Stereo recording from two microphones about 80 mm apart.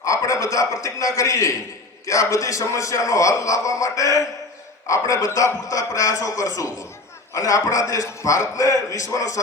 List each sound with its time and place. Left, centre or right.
0.0 s a man's voice: left